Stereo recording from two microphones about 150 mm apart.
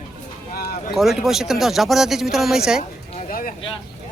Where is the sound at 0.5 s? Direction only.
90° left.